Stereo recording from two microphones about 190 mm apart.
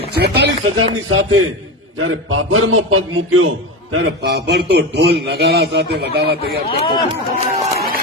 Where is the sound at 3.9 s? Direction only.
60° right (ahead or behind).